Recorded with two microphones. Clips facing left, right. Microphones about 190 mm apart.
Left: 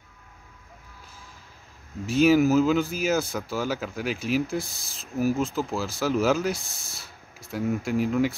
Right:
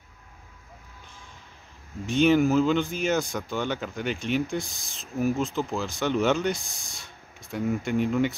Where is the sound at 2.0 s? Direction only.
5° left (ahead or behind).